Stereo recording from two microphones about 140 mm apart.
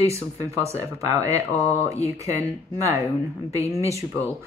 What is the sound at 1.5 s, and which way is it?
Speech, 15° left (ahead or behind).